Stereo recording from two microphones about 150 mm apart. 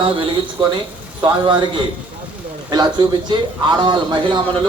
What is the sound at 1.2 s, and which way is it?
A man's voice, 30° right (ahead or behind).